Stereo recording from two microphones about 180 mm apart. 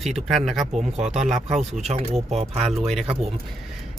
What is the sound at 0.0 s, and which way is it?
Speech, centre (ahead or behind).